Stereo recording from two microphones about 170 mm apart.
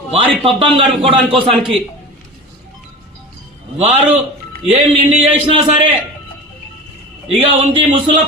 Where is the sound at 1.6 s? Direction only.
Centre (ahead or behind).